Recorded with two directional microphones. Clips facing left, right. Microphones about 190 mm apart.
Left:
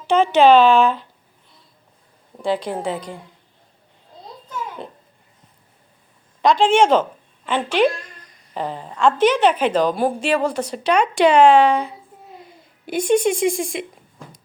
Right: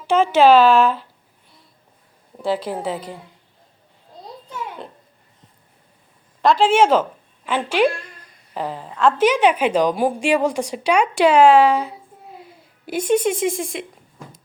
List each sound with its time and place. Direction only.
0.1 s speech: 5° right (ahead or behind)
2.4 s speech: 5° right (ahead or behind)
6.4 s a woman's voice: 5° right (ahead or behind)